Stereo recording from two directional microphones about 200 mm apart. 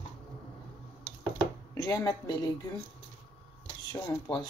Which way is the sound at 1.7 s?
15° left (ahead or behind).